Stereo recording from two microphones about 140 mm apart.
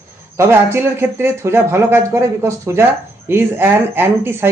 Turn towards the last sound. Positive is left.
turn(degrees=-15)  # may be behind; listen again after turning